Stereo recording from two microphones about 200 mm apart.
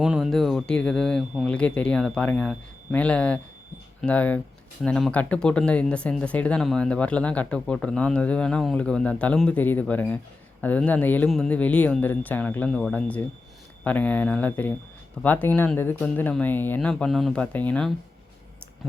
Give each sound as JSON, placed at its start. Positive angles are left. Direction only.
{"t": 0.0, "sound": "speech", "side_deg": -5}